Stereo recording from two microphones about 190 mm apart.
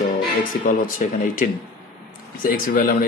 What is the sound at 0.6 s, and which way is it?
A man's voice, 45° left (ahead or behind).